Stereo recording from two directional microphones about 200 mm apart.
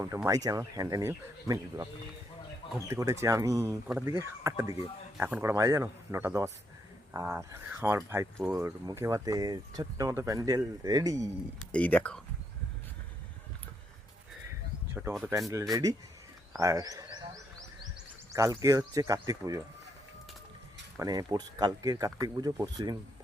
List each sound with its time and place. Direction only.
0.3 s speech: 15° right (ahead or behind)
11.7 s speech: 5° left (ahead or behind)
15.3 s speech: 15° right (ahead or behind)
16.5 s a sound: 15° right (ahead or behind)
18.3 s speech: 15° right (ahead or behind)
21.0 s speech: 20° right (ahead or behind)